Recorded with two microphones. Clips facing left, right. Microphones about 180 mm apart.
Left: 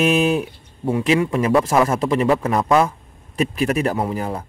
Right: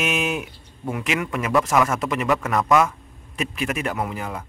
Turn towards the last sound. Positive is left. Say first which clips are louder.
# left 5 dB
turn(degrees=35)  # may be behind; listen again after turning